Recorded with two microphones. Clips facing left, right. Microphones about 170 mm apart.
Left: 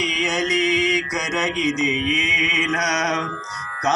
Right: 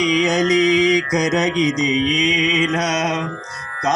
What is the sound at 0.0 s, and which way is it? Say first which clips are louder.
Mantra: right 7 dB; 45° right (ahead or behind).